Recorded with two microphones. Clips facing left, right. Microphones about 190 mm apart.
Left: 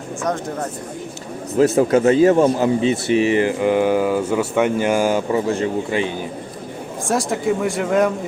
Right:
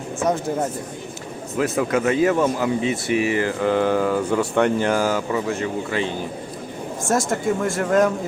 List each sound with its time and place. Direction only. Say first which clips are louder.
1.5 s speech: left 6 dB; 30° left (ahead or behind); by 5.2 s 15° left (ahead or behind)
5.3 s speech: left 4 dB; 30° left (ahead or behind)
5.9 s speech: left 2 dB; 20° left (ahead or behind)
7.1 s speech: left 1 dB; centre (ahead or behind)